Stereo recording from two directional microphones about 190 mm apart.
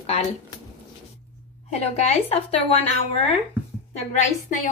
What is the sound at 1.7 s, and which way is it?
A woman's voice, 35° left (ahead or behind).